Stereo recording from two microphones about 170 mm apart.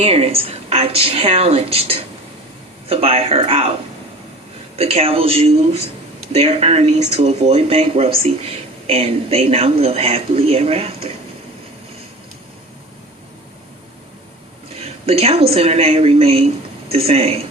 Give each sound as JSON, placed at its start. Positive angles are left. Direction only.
{"t": 0.0, "sound": "speech", "side_deg": -35}
{"t": 4.8, "sound": "speech", "side_deg": -35}
{"t": 14.8, "sound": "speech", "side_deg": -35}